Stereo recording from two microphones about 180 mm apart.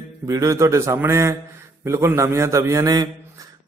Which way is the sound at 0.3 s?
15° right (ahead or behind).